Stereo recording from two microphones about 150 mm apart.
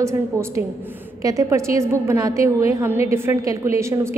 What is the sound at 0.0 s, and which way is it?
A woman's voice, 15° right (ahead or behind).